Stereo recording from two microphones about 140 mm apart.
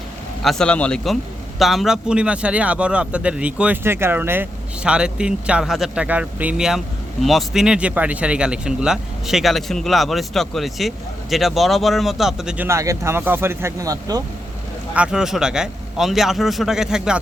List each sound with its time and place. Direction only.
0.4 s a man's voice: 5° left (ahead or behind)
12.6 s speech: 20° right (ahead or behind)
14.9 s a man's voice: 5° right (ahead or behind)